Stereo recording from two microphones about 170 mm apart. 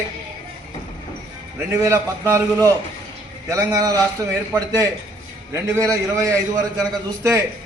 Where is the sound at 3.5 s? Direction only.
20° right (ahead or behind).